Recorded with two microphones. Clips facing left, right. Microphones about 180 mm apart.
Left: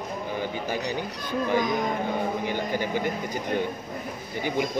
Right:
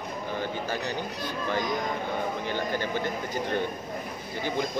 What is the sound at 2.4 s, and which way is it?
A man's voice, 15° left (ahead or behind).